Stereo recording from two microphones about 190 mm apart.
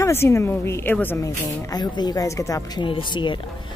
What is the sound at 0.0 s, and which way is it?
A woman's voice, 15° left (ahead or behind).